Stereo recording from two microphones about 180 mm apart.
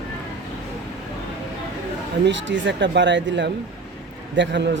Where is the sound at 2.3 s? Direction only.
90° right.